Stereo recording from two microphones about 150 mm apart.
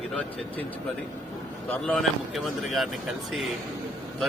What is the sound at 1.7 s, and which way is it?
A man's voice, 10° left (ahead or behind).